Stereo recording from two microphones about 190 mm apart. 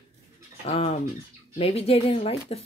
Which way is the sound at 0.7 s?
30° left (ahead or behind).